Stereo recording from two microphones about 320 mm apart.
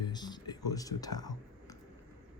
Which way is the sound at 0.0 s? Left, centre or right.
Centre.